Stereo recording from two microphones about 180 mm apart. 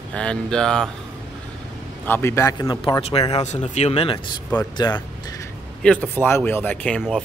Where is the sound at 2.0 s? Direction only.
15° left (ahead or behind).